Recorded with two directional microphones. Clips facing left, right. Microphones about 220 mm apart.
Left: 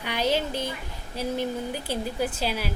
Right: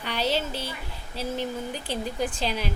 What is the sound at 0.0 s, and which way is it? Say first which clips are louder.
A woman's voice: left 2 dB; 10° left (ahead or behind).